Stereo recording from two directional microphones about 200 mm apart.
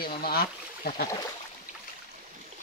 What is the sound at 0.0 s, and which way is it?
Speech, 50° left (ahead or behind).